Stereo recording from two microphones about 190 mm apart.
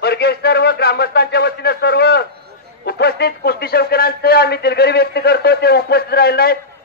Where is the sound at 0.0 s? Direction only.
60° left (ahead or behind).